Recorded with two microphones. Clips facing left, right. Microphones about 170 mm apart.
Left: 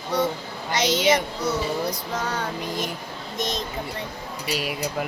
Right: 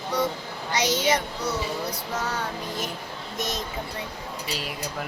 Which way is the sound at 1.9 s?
10° right (ahead or behind).